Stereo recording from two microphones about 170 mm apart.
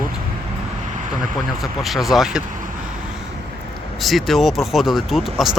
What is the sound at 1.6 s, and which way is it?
Speech, centre (ahead or behind).